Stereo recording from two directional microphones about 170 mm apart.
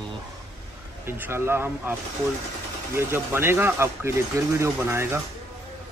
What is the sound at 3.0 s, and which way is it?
Speech, 15° right (ahead or behind).